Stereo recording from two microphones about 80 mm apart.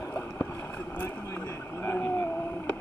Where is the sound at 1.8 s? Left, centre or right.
Left.